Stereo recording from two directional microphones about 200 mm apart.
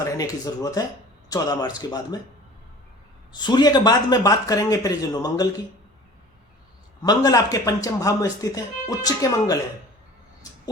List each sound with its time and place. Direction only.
0.0 s a man's voice: 15° left (ahead or behind)
3.3 s a man's voice: 20° left (ahead or behind)
7.0 s a man's voice: 20° left (ahead or behind)
10.4 s music: 20° left (ahead or behind)